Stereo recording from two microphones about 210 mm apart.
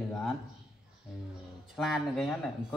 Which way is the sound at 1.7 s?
Centre (ahead or behind).